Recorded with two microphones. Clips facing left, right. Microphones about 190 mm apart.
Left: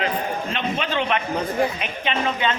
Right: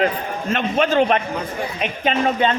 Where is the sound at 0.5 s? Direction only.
45° right (ahead or behind).